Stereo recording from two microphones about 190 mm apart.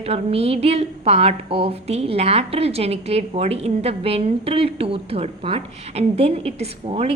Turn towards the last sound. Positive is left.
turn(degrees=-30)  # may be behind; listen again after turning